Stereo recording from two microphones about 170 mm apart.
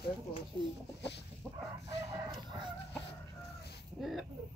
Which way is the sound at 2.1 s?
25° right (ahead or behind).